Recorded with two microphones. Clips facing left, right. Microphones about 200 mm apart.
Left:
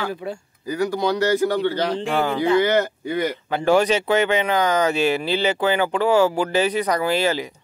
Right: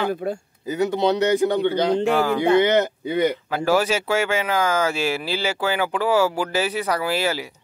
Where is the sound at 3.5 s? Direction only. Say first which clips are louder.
Left 2 dB; 5° right (ahead or behind).